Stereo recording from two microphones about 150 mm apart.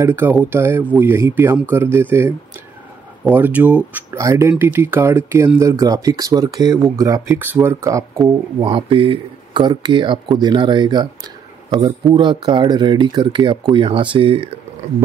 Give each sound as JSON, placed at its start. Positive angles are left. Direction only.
{"t": 0.0, "sound": "speech", "side_deg": -15}
{"t": 8.5, "sound": "speech", "side_deg": -35}